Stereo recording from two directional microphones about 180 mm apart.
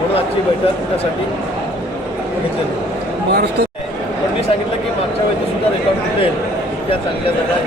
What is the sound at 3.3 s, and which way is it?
Speech, 65° right (ahead or behind).